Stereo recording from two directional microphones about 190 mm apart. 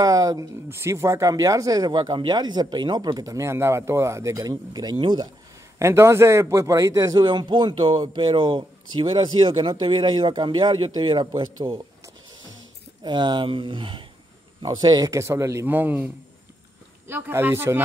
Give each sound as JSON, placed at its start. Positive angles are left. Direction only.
{"t": 0.0, "sound": "speech", "side_deg": -20}
{"t": 13.0, "sound": "a man's voice", "side_deg": -25}
{"t": 17.1, "sound": "a man's voice", "side_deg": -10}